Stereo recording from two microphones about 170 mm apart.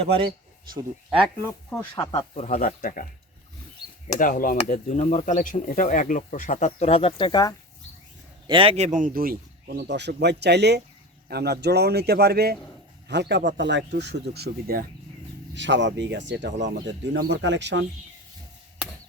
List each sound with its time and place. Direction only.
1.4 s speech: 15° left (ahead or behind)
2.3 s speech: 50° left (ahead or behind)
4.1 s speech: 50° left (ahead or behind); by 7.5 s 25° left (ahead or behind)
8.4 s speech: 30° right (ahead or behind); by 12.5 s 70° right (ahead or behind)
13.1 s speech: 85° right; by 14.8 s 65° right (ahead or behind)
15.5 s speech: 90° right